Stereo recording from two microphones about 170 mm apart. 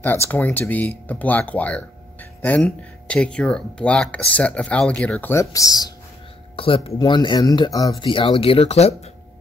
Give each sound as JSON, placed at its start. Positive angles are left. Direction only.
{"t": 0.0, "sound": "speech", "side_deg": 10}
{"t": 6.5, "sound": "speech", "side_deg": 30}